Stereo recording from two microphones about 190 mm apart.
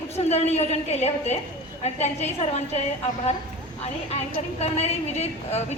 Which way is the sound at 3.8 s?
35° left (ahead or behind).